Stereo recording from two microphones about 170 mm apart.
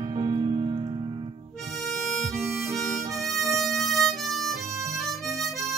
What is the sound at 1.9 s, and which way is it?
Harmonica, centre (ahead or behind).